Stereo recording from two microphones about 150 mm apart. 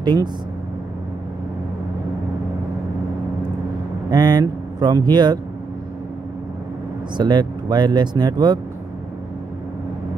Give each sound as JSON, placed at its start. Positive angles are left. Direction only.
{"t": 0.0, "sound": "speech", "side_deg": -30}
{"t": 4.1, "sound": "speech", "side_deg": -30}
{"t": 7.2, "sound": "speech", "side_deg": -30}